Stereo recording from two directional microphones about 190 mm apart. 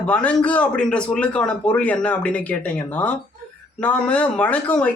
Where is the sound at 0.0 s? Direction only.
5° left (ahead or behind).